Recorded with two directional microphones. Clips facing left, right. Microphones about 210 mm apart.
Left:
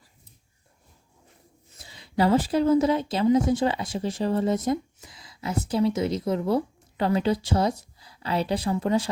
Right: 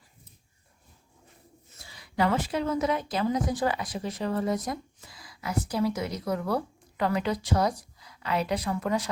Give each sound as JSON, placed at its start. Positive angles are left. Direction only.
{"t": 1.8, "sound": "a woman's voice", "side_deg": 25}